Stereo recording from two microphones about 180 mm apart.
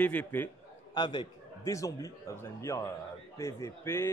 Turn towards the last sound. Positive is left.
turn(degrees=15)  # may be behind; listen again after turning